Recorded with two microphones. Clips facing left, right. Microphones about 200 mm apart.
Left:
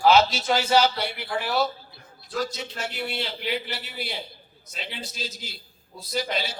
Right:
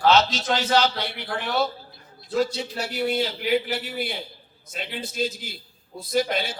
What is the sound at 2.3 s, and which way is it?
Speech, 25° right (ahead or behind).